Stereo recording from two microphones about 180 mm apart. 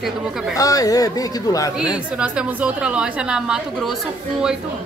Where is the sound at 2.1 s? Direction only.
5° right (ahead or behind).